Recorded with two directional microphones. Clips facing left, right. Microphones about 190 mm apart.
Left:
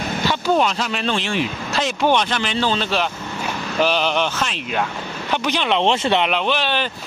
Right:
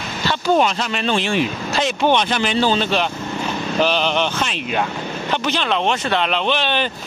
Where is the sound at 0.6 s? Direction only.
Centre (ahead or behind).